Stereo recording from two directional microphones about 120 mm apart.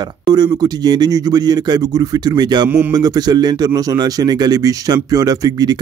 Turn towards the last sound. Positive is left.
turn(degrees=-35)  # may be behind; listen again after turning